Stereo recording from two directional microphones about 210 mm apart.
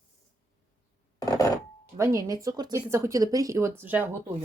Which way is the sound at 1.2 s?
15° left (ahead or behind).